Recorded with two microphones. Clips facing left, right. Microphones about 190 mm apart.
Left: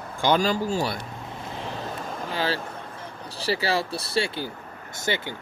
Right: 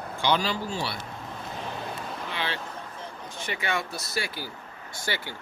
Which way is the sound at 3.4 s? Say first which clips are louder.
Left 6 dB; 35° left (ahead or behind).